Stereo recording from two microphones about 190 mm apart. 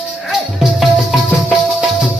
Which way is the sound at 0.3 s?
Centre (ahead or behind).